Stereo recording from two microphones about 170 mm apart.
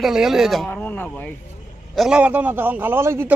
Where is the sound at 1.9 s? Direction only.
5° right (ahead or behind).